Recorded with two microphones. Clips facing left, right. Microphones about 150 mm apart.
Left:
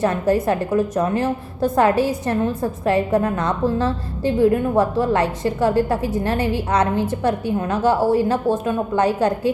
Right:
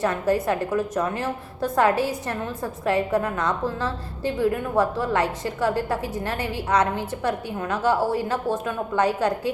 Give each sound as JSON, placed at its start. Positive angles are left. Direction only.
{"t": 0.0, "sound": "a woman's voice", "side_deg": 30}